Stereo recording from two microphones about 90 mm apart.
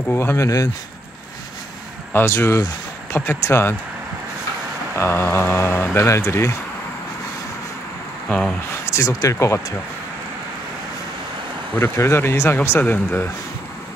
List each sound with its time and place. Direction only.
0.1 s speech: 25° left (ahead or behind)
2.1 s speech: 30° left (ahead or behind)
4.9 s speech: 25° left (ahead or behind)
8.3 s speech: 10° left (ahead or behind)
8.9 s speech: 40° left (ahead or behind)
11.7 s speech: 30° left (ahead or behind)